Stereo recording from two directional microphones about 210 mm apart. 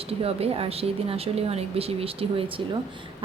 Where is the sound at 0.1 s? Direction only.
30° right (ahead or behind).